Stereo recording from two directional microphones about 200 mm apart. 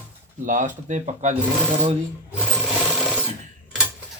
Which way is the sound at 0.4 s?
40° right (ahead or behind).